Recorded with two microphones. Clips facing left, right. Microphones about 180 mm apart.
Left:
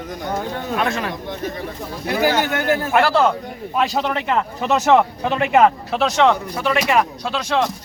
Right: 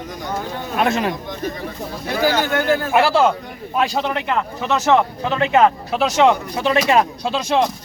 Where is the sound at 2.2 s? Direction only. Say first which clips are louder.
Right 1 dB; 15° left (ahead or behind).